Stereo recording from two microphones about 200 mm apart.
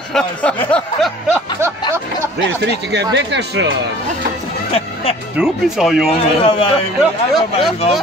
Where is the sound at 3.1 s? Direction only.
60° right (ahead or behind).